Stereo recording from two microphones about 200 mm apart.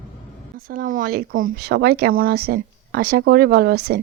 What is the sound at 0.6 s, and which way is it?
Speech, 40° right (ahead or behind).